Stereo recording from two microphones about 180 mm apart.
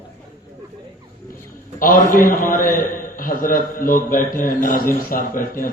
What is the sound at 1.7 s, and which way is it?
A man's voice, 50° left (ahead or behind).